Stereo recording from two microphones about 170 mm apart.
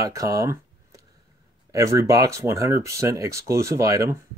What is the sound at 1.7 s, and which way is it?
Speech, 20° right (ahead or behind).